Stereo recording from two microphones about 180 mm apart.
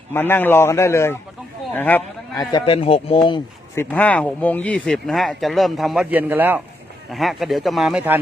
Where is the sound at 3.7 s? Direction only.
10° left (ahead or behind); by 8.2 s 10° right (ahead or behind).